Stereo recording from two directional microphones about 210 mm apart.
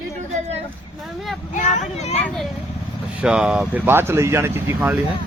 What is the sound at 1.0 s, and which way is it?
Speech, centre (ahead or behind).